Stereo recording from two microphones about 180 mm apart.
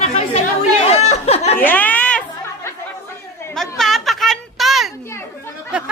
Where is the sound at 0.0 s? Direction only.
35° left (ahead or behind).